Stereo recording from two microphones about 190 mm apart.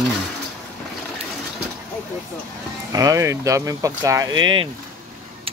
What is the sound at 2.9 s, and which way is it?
Speech, 20° right (ahead or behind).